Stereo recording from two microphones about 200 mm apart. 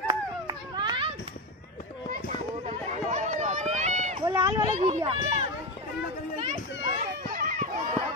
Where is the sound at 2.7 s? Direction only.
35° right (ahead or behind).